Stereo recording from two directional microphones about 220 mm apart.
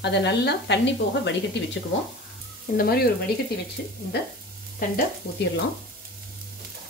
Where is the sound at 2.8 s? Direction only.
45° left (ahead or behind).